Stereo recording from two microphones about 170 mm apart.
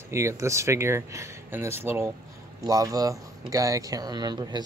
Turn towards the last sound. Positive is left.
turn(degrees=-25)  # may be behind; listen again after turning